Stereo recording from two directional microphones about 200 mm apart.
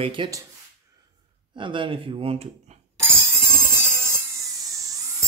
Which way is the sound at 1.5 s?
25° right (ahead or behind).